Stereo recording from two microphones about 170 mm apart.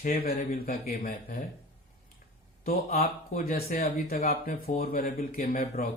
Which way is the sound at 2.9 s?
45° left (ahead or behind).